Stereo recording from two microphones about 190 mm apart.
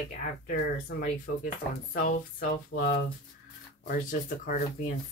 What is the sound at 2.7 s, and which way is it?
Speech, 50° left (ahead or behind).